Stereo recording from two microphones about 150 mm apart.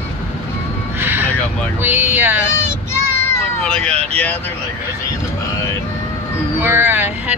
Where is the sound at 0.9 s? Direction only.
15° right (ahead or behind).